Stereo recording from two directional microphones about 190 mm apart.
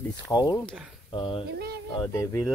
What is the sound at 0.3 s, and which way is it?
Speech, 20° left (ahead or behind).